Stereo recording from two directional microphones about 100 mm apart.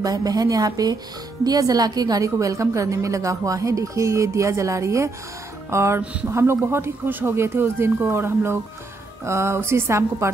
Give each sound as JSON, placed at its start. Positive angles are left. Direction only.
{"t": 0.0, "sound": "a woman's voice", "side_deg": -40}